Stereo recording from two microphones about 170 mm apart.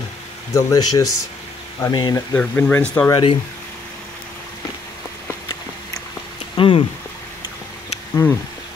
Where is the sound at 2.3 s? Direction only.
10° left (ahead or behind).